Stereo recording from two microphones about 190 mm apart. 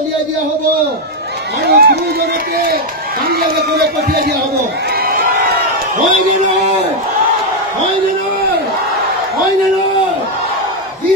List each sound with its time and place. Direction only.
1.7 s a man's voice: 50° right (ahead or behind)
3.3 s speech: 55° right (ahead or behind)